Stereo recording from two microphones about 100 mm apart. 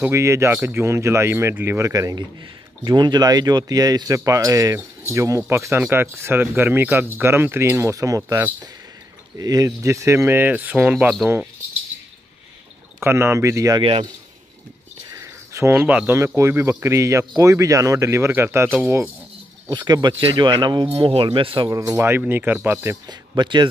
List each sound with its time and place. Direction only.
0.0 s speech: 25° right (ahead or behind)
2.8 s speech: 45° right (ahead or behind)
9.4 s speech: 35° right (ahead or behind); by 11.1 s 15° right (ahead or behind)
13.0 s speech: 25° right (ahead or behind)
13.7 s speech: 60° right (ahead or behind)
15.2 s a sound: 30° right (ahead or behind)
16.3 s speech: 25° right (ahead or behind)
19.7 s speech: 45° right (ahead or behind)
20.9 s speech: 70° right (ahead or behind)
21.6 s speech: 35° right (ahead or behind)
22.2 s speech: 20° right (ahead or behind)
23.0 s speech: 50° right (ahead or behind)